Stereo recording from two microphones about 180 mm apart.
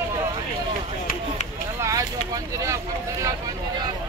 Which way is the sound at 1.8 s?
20° right (ahead or behind).